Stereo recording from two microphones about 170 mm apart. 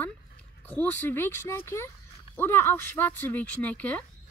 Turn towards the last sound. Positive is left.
turn(degrees=10)  # may be behind; listen again after turning